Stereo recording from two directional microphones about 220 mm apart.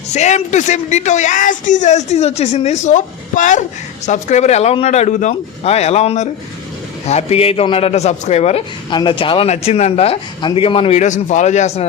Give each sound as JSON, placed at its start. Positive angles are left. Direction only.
{"t": 0.1, "sound": "a man's voice", "side_deg": 30}